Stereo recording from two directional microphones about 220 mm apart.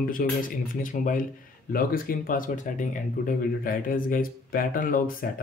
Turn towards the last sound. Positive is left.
turn(degrees=40)  # may be behind; listen again after turning